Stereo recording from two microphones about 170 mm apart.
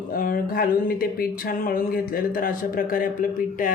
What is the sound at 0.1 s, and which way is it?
Speech, 55° left (ahead or behind).